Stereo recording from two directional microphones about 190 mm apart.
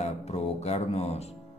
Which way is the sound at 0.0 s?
35° left (ahead or behind).